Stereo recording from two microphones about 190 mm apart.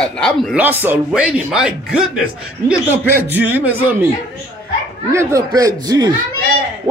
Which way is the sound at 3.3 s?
10° right (ahead or behind).